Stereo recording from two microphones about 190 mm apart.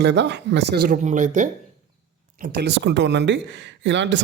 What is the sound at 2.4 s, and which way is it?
Speech, 60° right (ahead or behind).